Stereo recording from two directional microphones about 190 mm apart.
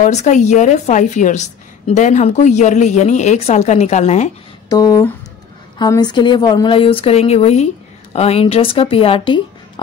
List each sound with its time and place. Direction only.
0.0 s a woman's voice: 40° left (ahead or behind)
4.6 s speech: 20° left (ahead or behind)